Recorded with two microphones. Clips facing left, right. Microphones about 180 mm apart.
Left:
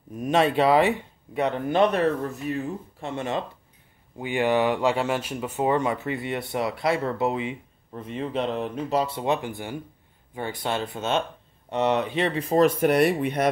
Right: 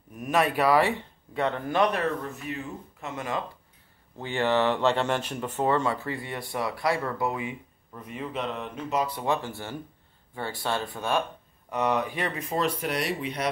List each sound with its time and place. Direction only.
0.1 s speech: 25° left (ahead or behind)
4.2 s speech: 15° left (ahead or behind)
12.5 s speech: 50° left (ahead or behind)